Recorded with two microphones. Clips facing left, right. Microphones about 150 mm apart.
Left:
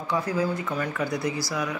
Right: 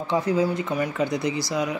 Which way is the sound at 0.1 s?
20° right (ahead or behind).